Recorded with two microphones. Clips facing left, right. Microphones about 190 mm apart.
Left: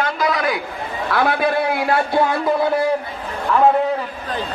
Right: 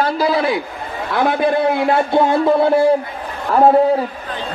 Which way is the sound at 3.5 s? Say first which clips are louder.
Right 3 dB; 40° right (ahead or behind).